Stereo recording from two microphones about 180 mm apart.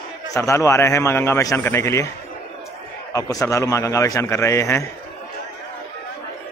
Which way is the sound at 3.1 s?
20° left (ahead or behind).